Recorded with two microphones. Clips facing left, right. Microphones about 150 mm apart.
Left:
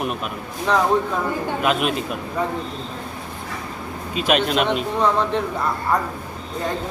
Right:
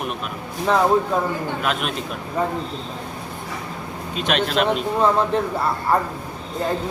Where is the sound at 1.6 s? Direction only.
5° left (ahead or behind).